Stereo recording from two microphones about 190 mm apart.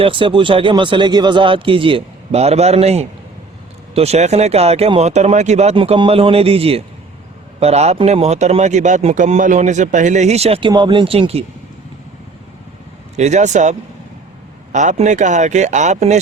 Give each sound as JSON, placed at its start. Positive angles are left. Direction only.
{"t": 0.0, "sound": "speech", "side_deg": -25}
{"t": 13.1, "sound": "speech", "side_deg": -35}